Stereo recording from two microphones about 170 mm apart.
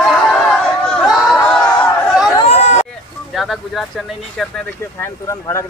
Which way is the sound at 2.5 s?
40° left (ahead or behind).